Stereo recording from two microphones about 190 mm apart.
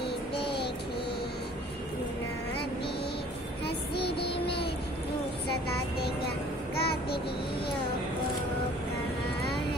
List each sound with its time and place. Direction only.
3.9 s child singing: 55° left (ahead or behind)
4.3 s music: 30° left (ahead or behind)
6.8 s child singing: 55° left (ahead or behind)